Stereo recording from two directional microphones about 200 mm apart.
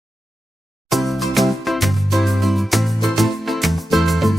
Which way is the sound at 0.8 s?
Centre (ahead or behind).